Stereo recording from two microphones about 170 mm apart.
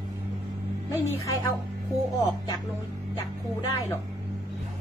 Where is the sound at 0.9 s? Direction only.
20° left (ahead or behind).